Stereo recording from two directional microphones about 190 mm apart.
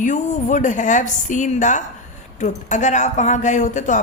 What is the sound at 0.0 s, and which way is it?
Speech, 40° left (ahead or behind).